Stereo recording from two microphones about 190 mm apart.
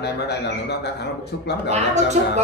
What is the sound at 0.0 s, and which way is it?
Speech, 60° left (ahead or behind).